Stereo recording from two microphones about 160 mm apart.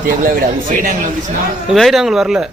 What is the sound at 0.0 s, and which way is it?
Speech, 55° right (ahead or behind).